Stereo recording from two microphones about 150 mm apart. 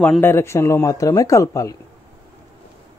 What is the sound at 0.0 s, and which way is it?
Speech, 15° left (ahead or behind).